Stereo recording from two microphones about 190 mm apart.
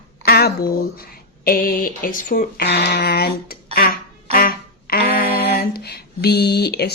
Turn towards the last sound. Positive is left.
turn(degrees=60)  # may be behind; listen again after turning